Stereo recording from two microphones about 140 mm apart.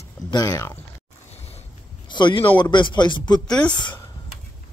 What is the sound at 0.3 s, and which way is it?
Speech, 25° left (ahead or behind).